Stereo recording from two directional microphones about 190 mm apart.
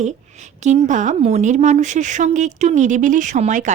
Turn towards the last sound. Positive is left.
turn(degrees=-40)  # may be behind; listen again after turning